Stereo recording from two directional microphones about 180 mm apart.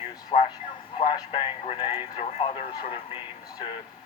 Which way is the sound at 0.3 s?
30° left (ahead or behind).